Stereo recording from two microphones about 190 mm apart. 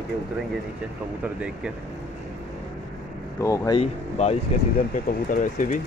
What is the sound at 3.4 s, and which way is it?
Speech, 15° left (ahead or behind).